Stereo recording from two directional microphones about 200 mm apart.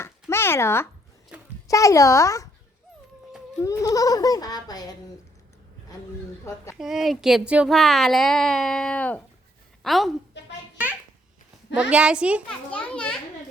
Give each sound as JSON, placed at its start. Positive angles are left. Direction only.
{"t": 0.0, "sound": "a sound", "side_deg": 10}
{"t": 1.6, "sound": "a child's voice", "side_deg": 15}
{"t": 3.5, "sound": "a child's voice", "side_deg": 15}
{"t": 6.7, "sound": "a woman's voice", "side_deg": 0}
{"t": 11.7, "sound": "speech", "side_deg": -5}
{"t": 12.7, "sound": "speech", "side_deg": 5}